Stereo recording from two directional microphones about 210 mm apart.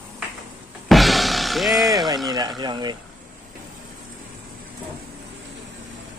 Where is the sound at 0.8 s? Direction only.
Centre (ahead or behind).